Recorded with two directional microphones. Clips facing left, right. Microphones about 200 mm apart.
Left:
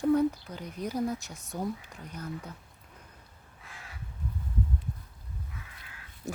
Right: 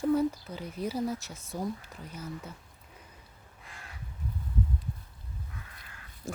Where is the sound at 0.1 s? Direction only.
5° right (ahead or behind).